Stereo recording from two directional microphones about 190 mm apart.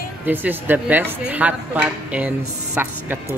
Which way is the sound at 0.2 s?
10° right (ahead or behind).